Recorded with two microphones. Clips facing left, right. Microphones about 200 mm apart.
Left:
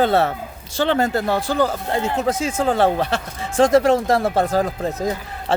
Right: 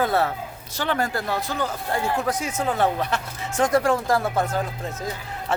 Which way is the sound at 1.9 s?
20° left (ahead or behind).